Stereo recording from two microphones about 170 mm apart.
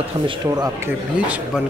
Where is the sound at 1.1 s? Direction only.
5° right (ahead or behind).